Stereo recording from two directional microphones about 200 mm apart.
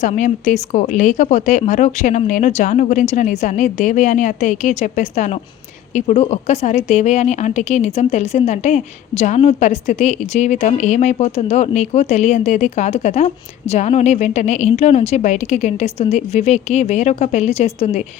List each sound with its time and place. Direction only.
0.0 s a woman's voice: 35° left (ahead or behind)